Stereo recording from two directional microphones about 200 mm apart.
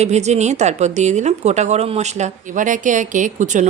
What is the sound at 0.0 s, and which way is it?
A woman's voice, 35° right (ahead or behind).